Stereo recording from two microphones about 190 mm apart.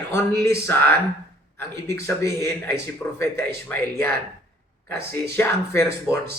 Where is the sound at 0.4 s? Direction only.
15° left (ahead or behind).